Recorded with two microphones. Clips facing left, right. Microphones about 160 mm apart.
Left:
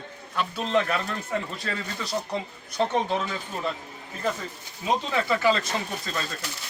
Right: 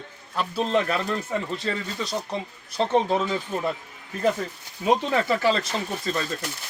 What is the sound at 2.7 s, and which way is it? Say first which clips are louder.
Speech: right 3 dB; 30° right (ahead or behind).